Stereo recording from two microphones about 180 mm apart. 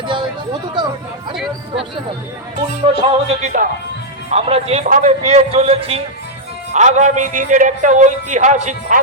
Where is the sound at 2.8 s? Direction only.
35° right (ahead or behind).